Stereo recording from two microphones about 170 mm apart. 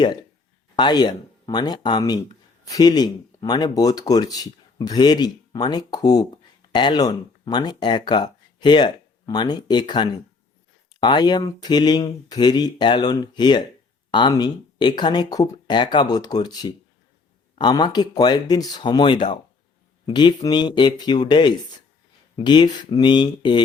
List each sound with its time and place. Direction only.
0.0 s speech: 25° left (ahead or behind)